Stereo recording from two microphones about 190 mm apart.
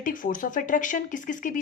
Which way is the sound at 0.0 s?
45° left (ahead or behind).